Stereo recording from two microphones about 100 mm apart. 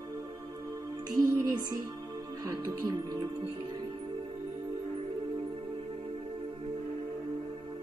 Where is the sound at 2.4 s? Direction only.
40° right (ahead or behind).